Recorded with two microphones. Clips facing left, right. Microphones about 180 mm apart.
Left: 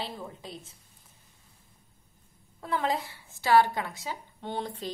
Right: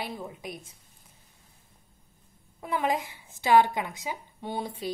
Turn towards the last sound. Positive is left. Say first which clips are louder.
# right 1 dB
turn(degrees=-10)  # may be behind; listen again after turning